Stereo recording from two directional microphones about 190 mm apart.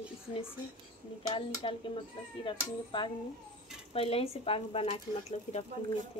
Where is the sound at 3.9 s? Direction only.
30° left (ahead or behind).